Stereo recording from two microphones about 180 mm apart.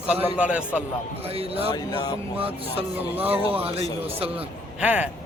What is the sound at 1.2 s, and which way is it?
Speech, 35° right (ahead or behind).